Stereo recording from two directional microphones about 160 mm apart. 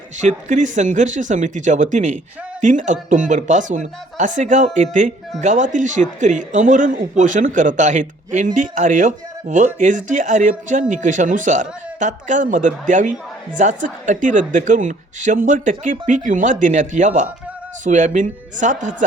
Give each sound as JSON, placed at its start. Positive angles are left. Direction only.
{"t": 0.2, "sound": "a man's voice", "side_deg": -50}